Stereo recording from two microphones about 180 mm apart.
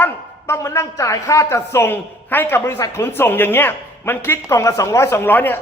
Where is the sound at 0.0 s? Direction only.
15° left (ahead or behind).